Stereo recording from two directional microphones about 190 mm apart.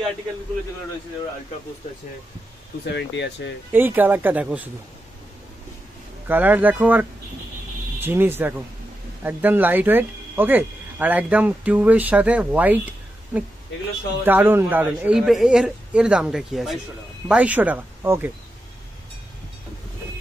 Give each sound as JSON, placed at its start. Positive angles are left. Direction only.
{"t": 2.8, "sound": "speech", "side_deg": 65}
{"t": 3.7, "sound": "speech", "side_deg": -10}
{"t": 6.2, "sound": "a man's voice", "side_deg": -10}